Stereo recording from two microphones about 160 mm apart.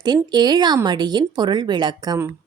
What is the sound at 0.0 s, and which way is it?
Speech, 25° right (ahead or behind).